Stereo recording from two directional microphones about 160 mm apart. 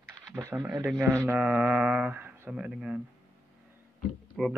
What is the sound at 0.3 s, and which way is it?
Speech, 15° right (ahead or behind).